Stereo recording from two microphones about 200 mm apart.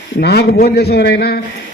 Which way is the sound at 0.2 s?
55° left (ahead or behind).